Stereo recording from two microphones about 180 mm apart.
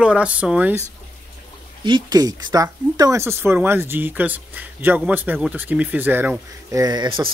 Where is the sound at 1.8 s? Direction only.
25° right (ahead or behind).